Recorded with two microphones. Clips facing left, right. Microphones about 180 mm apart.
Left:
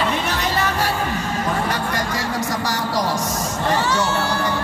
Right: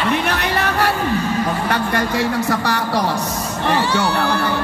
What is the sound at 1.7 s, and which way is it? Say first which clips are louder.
Speech: right 4 dB; 60° right (ahead or behind).